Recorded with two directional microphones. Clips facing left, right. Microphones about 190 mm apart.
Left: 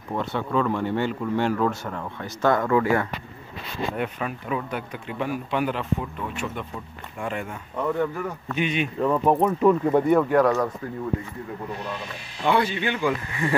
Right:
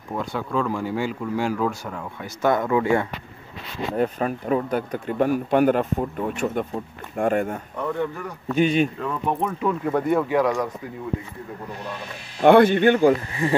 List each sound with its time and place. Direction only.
0.1 s speech: centre (ahead or behind)
2.4 s speech: 15° right (ahead or behind)
3.9 s speech: 40° right (ahead or behind)
8.5 s speech: 40° right (ahead or behind)
9.0 s speech: 35° left (ahead or behind)
9.8 s speech: 15° left (ahead or behind)
10.1 s speech: 10° right (ahead or behind)
12.4 s speech: 55° right (ahead or behind)
13.3 s speech: 25° right (ahead or behind)